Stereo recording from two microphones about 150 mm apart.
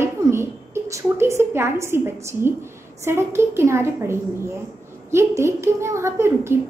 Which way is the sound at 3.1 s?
15° right (ahead or behind).